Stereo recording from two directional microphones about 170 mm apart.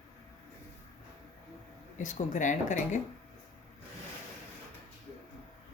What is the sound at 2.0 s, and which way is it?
Speech, 50° left (ahead or behind).